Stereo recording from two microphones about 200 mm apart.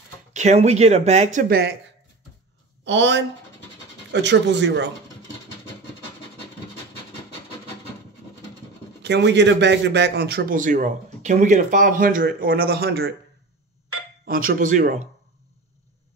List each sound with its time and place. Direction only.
0.3 s speech: 35° right (ahead or behind)
1.5 s speech: 55° right (ahead or behind)
2.8 s speech: 60° right (ahead or behind)
9.0 s a man's voice: 60° right (ahead or behind)
14.2 s a man's voice: 45° right (ahead or behind)